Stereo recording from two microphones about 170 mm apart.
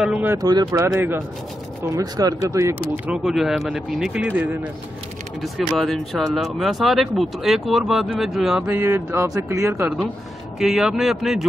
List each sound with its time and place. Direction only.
0.0 s speech: 10° right (ahead or behind)
3.1 s speech: centre (ahead or behind)
10.6 s speech: 5° right (ahead or behind)